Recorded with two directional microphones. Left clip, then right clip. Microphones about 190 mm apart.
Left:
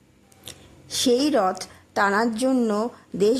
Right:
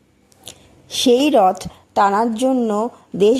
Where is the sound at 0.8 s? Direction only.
15° right (ahead or behind).